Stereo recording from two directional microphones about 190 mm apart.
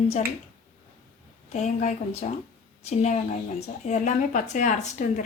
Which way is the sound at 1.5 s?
40° left (ahead or behind).